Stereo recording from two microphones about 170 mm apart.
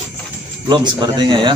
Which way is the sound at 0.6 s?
25° right (ahead or behind).